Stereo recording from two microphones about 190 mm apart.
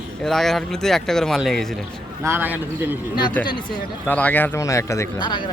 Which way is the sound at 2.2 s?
10° right (ahead or behind).